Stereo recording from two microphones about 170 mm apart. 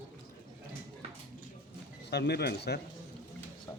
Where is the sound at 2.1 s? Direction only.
75° left (ahead or behind).